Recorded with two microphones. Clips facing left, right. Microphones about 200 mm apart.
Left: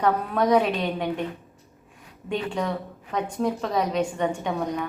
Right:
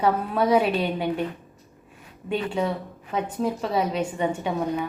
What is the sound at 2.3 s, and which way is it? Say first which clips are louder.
A woman's voice: right 2 dB; 5° right (ahead or behind).